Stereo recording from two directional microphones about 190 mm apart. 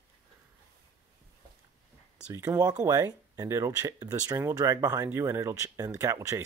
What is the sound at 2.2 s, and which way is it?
Speech, 10° right (ahead or behind).